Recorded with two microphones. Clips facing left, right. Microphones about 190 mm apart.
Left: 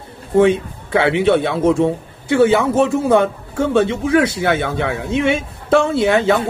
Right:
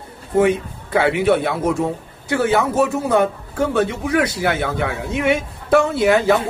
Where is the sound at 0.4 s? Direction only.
25° left (ahead or behind).